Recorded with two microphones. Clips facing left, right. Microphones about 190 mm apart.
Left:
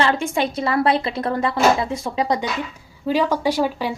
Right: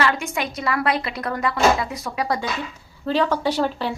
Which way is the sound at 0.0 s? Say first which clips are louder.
Left 3 dB; 30° left (ahead or behind).